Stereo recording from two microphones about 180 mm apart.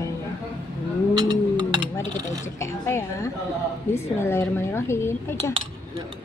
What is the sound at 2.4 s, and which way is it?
Speech, 15° left (ahead or behind).